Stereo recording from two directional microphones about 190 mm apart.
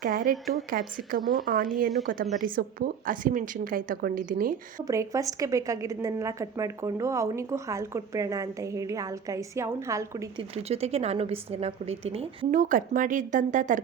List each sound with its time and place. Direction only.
0.0 s a woman's voice: 45° right (ahead or behind)
4.9 s a woman's voice: 15° right (ahead or behind)
10.5 s a woman's voice: 30° right (ahead or behind)